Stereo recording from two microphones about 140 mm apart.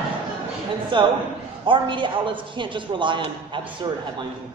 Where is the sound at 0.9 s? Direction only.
35° right (ahead or behind).